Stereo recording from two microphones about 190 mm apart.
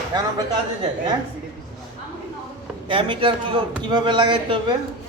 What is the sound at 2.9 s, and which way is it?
Speech, 25° right (ahead or behind).